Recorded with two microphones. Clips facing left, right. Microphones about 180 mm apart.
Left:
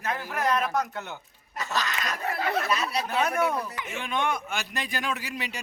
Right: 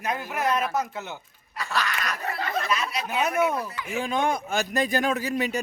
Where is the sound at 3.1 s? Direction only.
10° right (ahead or behind).